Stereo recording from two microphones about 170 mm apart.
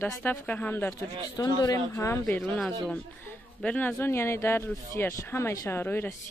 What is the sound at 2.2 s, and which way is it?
Speech, 5° left (ahead or behind).